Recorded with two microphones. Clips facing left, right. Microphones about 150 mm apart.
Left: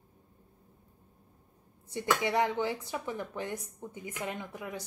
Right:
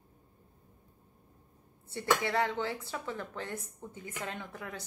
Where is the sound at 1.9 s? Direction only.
15° left (ahead or behind).